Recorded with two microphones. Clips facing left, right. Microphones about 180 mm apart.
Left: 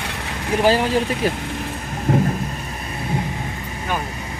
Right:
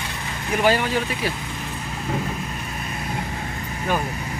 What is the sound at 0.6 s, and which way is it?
Speech, 35° left (ahead or behind).